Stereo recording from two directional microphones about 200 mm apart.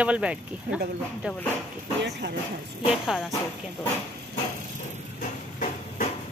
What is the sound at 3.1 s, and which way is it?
Speech, 5° right (ahead or behind).